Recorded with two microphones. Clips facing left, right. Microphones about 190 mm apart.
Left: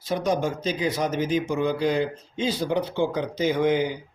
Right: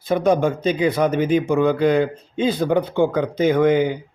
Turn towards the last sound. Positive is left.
turn(degrees=-55)  # may be behind; listen again after turning